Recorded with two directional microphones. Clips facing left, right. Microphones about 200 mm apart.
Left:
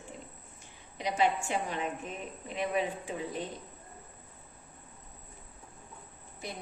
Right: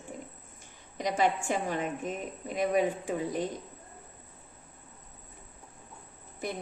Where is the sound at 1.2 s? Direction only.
45° right (ahead or behind).